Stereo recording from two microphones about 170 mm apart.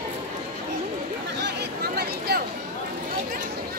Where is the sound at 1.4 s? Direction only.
65° right (ahead or behind).